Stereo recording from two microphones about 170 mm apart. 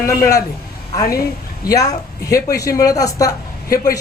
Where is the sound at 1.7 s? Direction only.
20° left (ahead or behind).